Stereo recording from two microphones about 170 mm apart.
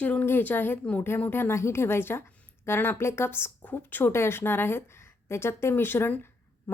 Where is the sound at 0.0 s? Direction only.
10° left (ahead or behind).